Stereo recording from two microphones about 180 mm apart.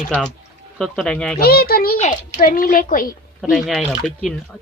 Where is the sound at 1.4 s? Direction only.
60° left (ahead or behind).